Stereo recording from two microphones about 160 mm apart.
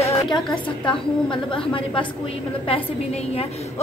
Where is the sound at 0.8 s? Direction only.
30° left (ahead or behind).